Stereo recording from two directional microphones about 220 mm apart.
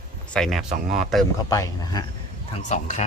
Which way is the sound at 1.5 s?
15° left (ahead or behind).